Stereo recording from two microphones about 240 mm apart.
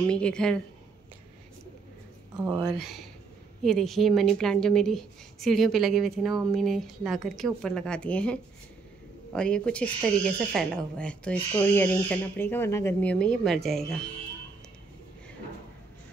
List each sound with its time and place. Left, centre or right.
0.0 s a woman's voice: centre
2.4 s a woman's voice: centre